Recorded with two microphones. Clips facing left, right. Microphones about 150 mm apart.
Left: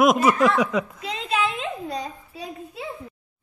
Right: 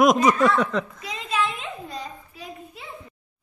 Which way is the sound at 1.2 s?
90° left.